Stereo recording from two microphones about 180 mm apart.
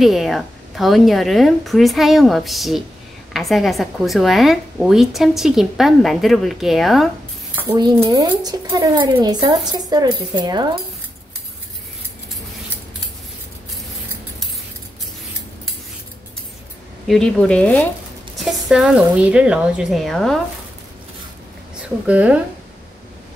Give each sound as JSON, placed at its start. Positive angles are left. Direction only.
{"t": 0.0, "sound": "a woman's voice", "side_deg": 0}
{"t": 7.9, "sound": "speech", "side_deg": -20}
{"t": 17.1, "sound": "a woman's voice", "side_deg": 5}
{"t": 21.8, "sound": "a woman's voice", "side_deg": -5}